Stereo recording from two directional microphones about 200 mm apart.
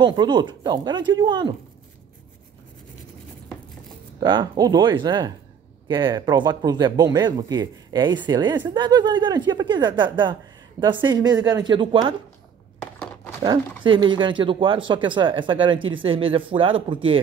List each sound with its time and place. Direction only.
0.0 s speech: 20° right (ahead or behind)
4.2 s speech: 20° right (ahead or behind)
12.8 s a sound: 10° left (ahead or behind)
13.8 s speech: 25° right (ahead or behind)